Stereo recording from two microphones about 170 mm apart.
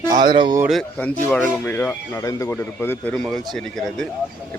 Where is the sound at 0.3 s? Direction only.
25° right (ahead or behind).